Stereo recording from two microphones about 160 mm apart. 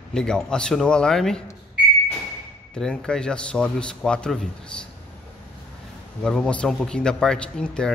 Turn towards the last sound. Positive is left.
turn(degrees=5)  # may be behind; listen again after turning